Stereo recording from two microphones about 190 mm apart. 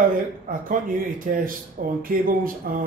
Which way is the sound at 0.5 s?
45° right (ahead or behind).